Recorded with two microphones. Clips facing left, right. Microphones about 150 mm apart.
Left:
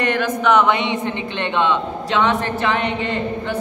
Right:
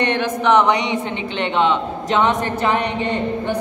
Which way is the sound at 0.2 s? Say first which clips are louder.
Right 1 dB; 20° right (ahead or behind).